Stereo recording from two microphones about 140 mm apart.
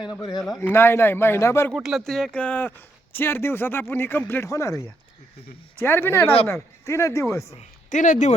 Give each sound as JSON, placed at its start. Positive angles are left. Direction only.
{"t": 0.0, "sound": "speech", "side_deg": 30}
{"t": 0.6, "sound": "speech", "side_deg": 15}
{"t": 1.7, "sound": "speech", "side_deg": 0}
{"t": 7.9, "sound": "speech", "side_deg": 60}